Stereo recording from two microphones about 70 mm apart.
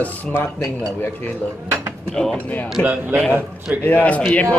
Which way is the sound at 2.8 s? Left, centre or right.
Left.